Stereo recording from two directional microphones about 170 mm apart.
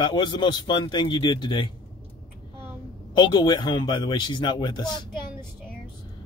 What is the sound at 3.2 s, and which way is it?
Speech, 25° left (ahead or behind).